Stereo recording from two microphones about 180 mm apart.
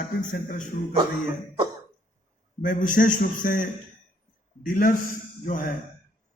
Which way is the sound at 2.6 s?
45° left (ahead or behind).